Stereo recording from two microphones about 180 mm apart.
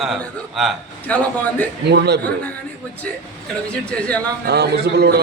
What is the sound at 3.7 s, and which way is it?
Speech, 5° left (ahead or behind).